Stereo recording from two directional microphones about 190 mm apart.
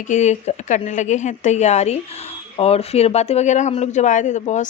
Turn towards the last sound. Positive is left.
turn(degrees=40)  # may be behind; listen again after turning